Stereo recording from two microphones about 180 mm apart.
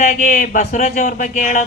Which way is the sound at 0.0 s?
50° left (ahead or behind).